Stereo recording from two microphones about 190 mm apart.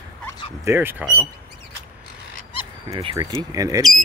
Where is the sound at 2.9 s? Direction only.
30° right (ahead or behind).